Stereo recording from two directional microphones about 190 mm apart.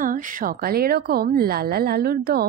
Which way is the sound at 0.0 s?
45° right (ahead or behind).